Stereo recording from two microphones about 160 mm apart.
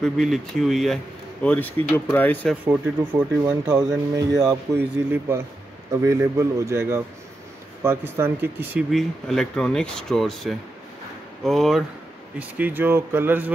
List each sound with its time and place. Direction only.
0.0 s speech: centre (ahead or behind)
2.6 s speech: 10° right (ahead or behind)
8.9 s speech: 5° left (ahead or behind)
12.4 s speech: 10° right (ahead or behind)